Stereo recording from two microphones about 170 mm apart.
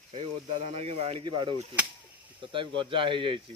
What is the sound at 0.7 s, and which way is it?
Speech, 40° right (ahead or behind).